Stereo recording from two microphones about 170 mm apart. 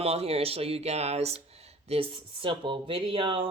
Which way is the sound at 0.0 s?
35° right (ahead or behind).